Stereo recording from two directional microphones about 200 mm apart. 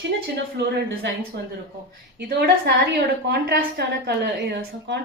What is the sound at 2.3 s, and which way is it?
A woman's voice, 55° right (ahead or behind).